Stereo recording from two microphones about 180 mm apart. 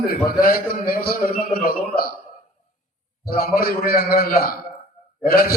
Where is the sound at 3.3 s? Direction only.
55° left (ahead or behind).